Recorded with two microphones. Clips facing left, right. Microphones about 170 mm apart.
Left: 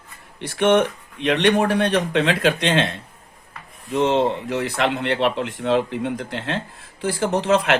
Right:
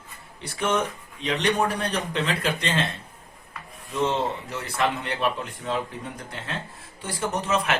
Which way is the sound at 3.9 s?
65° left (ahead or behind).